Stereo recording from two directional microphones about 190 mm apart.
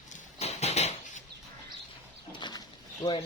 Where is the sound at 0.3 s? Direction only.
35° left (ahead or behind).